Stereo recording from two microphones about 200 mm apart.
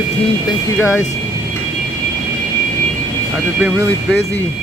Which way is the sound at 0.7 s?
10° left (ahead or behind).